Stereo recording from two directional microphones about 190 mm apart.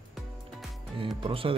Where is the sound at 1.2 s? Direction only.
30° right (ahead or behind).